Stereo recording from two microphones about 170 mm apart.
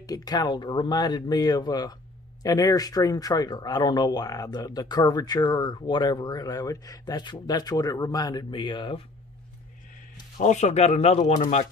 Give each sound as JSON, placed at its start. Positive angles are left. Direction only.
{"t": 0.0, "sound": "speech", "side_deg": 20}
{"t": 10.3, "sound": "speech", "side_deg": 45}